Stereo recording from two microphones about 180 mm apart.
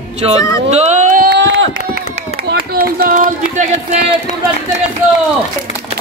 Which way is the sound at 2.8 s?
55° right (ahead or behind).